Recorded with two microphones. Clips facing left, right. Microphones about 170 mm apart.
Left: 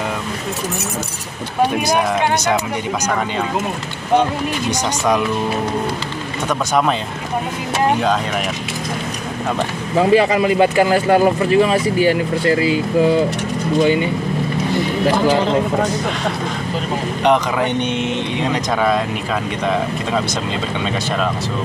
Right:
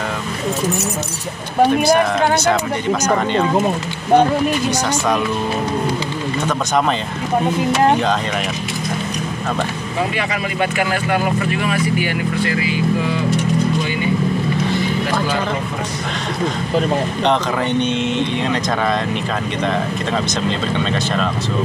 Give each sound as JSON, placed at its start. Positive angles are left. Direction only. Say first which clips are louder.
{"t": 4.6, "sound": "speech", "louder": "even", "side_deg": 15}
{"t": 10.1, "sound": "speech", "louder": "left 9 dB", "side_deg": 30}
{"t": 15.0, "sound": "speech", "louder": "left 5 dB", "side_deg": 20}
{"t": 17.2, "sound": "speech", "louder": "left 5 dB", "side_deg": 10}